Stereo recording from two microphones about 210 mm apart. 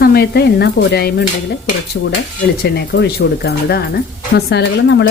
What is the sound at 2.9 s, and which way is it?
Speech, 50° left (ahead or behind).